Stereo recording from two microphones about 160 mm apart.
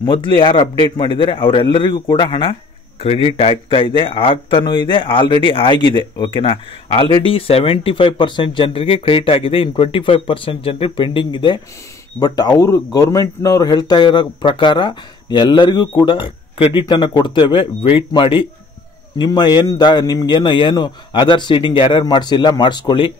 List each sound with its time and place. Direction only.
0.0 s speech: 30° left (ahead or behind)